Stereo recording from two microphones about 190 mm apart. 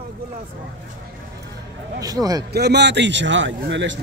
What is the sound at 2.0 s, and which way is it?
Speech, 20° right (ahead or behind).